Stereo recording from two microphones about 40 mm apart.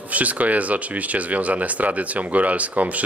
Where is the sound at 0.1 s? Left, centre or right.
Right.